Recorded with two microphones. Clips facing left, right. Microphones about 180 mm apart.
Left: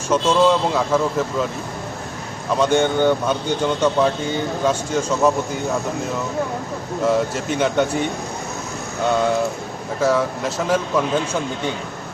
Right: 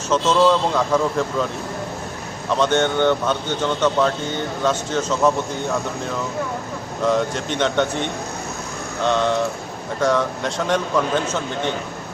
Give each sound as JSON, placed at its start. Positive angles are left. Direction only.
{"t": 0.1, "sound": "speech", "side_deg": 10}
{"t": 2.5, "sound": "speech", "side_deg": 10}
{"t": 7.0, "sound": "a man's voice", "side_deg": 5}
{"t": 9.0, "sound": "a man's voice", "side_deg": 10}